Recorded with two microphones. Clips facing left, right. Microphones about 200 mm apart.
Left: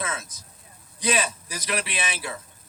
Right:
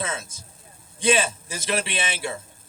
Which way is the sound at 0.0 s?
25° right (ahead or behind).